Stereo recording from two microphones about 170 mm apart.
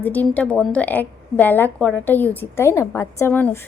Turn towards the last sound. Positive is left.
turn(degrees=10)  # may be behind; listen again after turning